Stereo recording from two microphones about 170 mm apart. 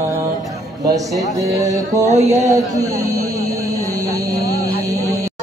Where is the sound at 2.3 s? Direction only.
20° right (ahead or behind).